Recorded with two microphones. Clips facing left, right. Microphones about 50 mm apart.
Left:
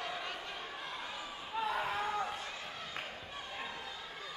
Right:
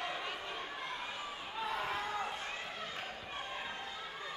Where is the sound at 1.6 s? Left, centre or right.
Centre.